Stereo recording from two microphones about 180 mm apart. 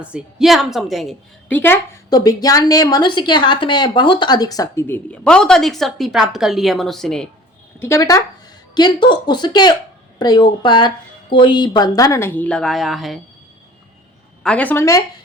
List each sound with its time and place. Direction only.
0.0 s a woman's voice: 5° right (ahead or behind)
1.5 s a woman's voice: 10° left (ahead or behind)
7.8 s a woman's voice: 15° left (ahead or behind); by 13.1 s centre (ahead or behind)
14.4 s a woman's voice: 5° left (ahead or behind)